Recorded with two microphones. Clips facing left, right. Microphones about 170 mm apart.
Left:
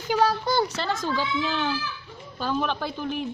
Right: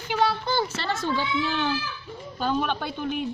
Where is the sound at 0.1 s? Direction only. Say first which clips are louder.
Left 2 dB; 40° left (ahead or behind).